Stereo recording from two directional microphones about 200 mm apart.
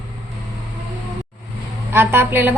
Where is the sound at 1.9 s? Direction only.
10° right (ahead or behind).